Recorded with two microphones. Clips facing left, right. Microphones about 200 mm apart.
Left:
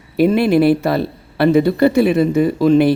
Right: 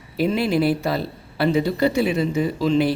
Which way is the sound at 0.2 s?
60° left (ahead or behind).